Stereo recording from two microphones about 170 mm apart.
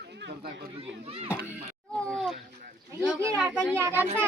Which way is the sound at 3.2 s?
10° right (ahead or behind).